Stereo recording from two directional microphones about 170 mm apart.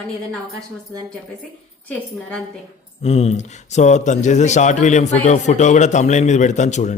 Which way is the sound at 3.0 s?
35° left (ahead or behind).